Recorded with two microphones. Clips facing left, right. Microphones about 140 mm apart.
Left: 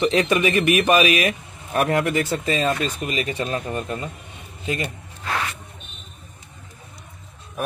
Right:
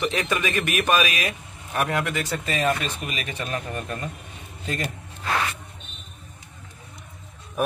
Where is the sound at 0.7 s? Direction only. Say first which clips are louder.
Left 5 dB; 35° right (ahead or behind).